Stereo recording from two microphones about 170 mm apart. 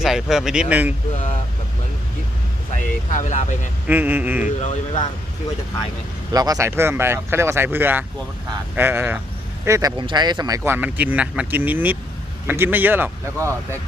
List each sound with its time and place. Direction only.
0.0 s speech: centre (ahead or behind)
3.1 s speech: 45° left (ahead or behind)
3.8 s speech: 10° right (ahead or behind)
4.4 s speech: 45° left (ahead or behind)
6.3 s speech: 20° right (ahead or behind)